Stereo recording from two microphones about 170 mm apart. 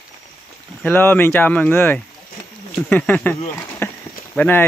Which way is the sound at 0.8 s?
10° left (ahead or behind).